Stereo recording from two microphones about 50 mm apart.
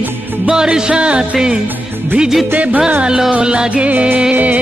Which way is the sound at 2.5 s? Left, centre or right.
Right.